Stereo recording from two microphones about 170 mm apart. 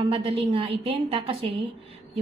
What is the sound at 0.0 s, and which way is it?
A woman's voice, 35° right (ahead or behind).